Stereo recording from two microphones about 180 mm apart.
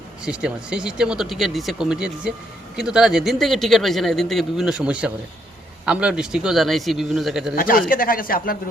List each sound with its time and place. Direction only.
0.3 s speech: 5° right (ahead or behind)
7.5 s speech: 55° left (ahead or behind)